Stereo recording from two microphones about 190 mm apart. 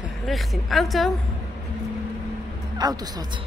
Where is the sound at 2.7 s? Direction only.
20° right (ahead or behind).